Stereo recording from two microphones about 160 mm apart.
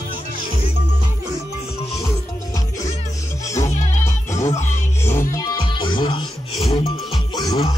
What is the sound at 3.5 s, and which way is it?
Music, 20° left (ahead or behind).